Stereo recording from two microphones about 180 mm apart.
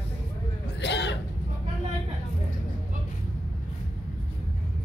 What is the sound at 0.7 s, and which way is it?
Cough, 70° left (ahead or behind).